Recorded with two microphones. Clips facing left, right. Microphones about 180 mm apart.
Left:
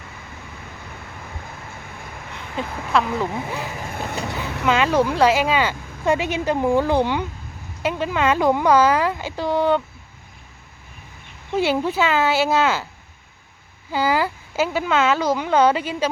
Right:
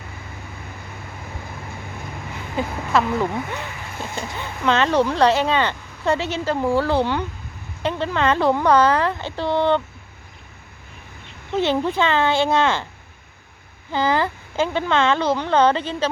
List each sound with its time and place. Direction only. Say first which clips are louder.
2.3 s speech: right 3 dB; centre (ahead or behind)
4.1 s speech: left 2 dB; 70° left (ahead or behind)
4.6 s speech: even; 10° left (ahead or behind)
11.5 s speech: even; 10° left (ahead or behind)
13.9 s speech: even; 10° left (ahead or behind)